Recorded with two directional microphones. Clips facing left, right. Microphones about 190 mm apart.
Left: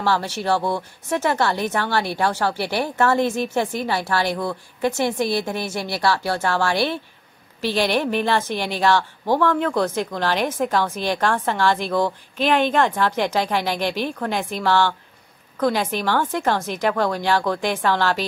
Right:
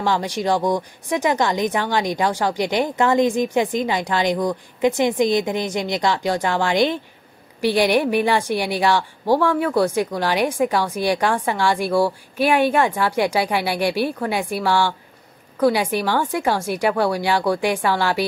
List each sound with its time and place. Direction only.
0.0 s a woman's voice: 15° right (ahead or behind)